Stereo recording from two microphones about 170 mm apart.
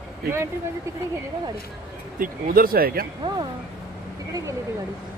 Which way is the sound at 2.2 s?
55° right (ahead or behind).